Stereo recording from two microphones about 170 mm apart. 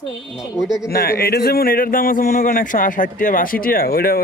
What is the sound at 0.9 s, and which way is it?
Speech, 60° left (ahead or behind).